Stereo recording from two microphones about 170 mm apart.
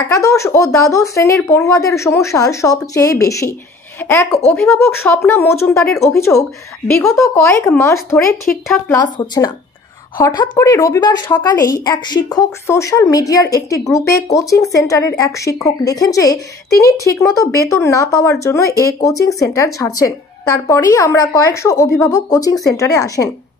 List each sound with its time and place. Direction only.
0.1 s speech: 15° left (ahead or behind)
8.5 s speech: centre (ahead or behind)
8.8 s speech: 20° left (ahead or behind)